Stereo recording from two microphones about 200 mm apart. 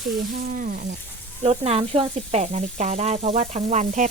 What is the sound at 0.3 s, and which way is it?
Speech, 45° right (ahead or behind).